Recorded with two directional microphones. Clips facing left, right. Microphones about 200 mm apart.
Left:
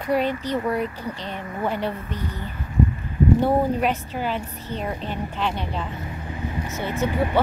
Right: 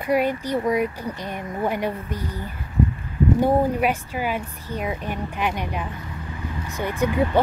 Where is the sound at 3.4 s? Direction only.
10° right (ahead or behind).